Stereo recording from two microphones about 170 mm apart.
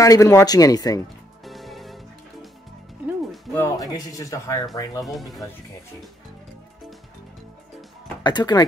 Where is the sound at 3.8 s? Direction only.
20° left (ahead or behind).